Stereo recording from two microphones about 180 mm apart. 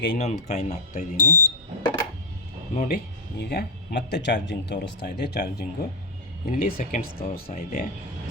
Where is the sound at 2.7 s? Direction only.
45° left (ahead or behind).